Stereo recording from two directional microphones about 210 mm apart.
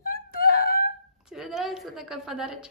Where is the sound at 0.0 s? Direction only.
45° left (ahead or behind).